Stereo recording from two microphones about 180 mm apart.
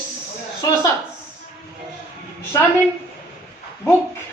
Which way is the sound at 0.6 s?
25° left (ahead or behind).